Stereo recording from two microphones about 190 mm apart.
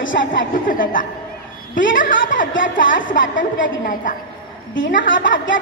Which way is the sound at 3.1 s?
45° left (ahead or behind).